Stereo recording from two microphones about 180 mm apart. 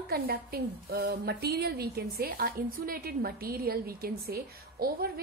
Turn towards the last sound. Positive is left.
turn(degrees=-55)  # may be behind; listen again after turning